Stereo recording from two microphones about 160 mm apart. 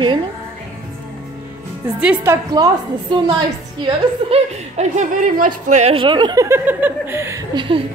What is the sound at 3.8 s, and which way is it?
Speech, 40° right (ahead or behind).